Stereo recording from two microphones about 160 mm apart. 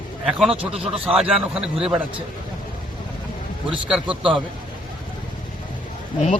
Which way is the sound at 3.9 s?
5° right (ahead or behind).